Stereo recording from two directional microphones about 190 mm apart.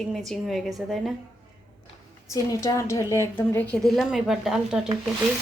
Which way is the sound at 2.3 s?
15° left (ahead or behind).